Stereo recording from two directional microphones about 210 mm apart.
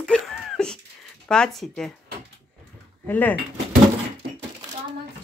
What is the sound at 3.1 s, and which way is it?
Speech, 10° left (ahead or behind).